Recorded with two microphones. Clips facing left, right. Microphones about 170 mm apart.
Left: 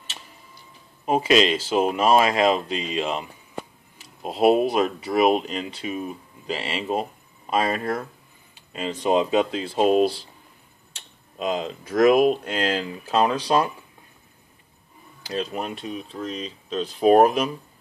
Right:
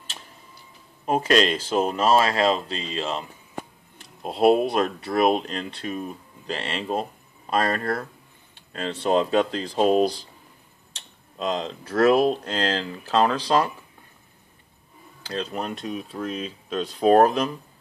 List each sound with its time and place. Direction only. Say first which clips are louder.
1.0 s speech: left 1 dB; 5° left (ahead or behind)
11.3 s speech: left 1 dB; 10° left (ahead or behind)
15.8 s speech: right 1 dB; 5° right (ahead or behind)
17.0 s speech: left 1 dB; 10° left (ahead or behind)